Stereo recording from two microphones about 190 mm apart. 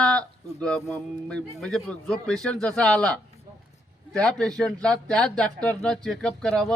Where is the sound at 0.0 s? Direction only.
5° left (ahead or behind).